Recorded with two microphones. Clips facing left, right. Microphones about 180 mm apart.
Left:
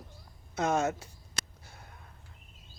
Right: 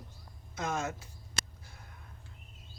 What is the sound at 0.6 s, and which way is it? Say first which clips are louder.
Speech: left 6 dB; 70° left (ahead or behind).